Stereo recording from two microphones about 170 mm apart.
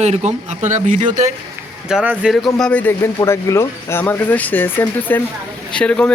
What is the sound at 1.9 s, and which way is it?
Speech, 5° right (ahead or behind).